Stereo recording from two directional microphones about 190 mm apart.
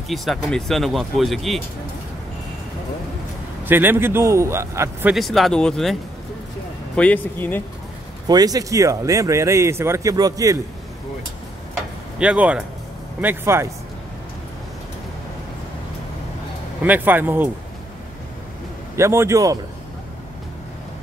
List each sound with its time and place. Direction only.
0.1 s speech: centre (ahead or behind)
3.6 s speech: 10° right (ahead or behind)
5.1 s speech: centre (ahead or behind)
7.0 s speech: 10° left (ahead or behind)
8.3 s speech: 20° right (ahead or behind)
11.7 s tick-tock: 5° right (ahead or behind)
13.2 s speech: 10° right (ahead or behind)
16.8 s speech: 10° right (ahead or behind)
18.9 s speech: 15° right (ahead or behind)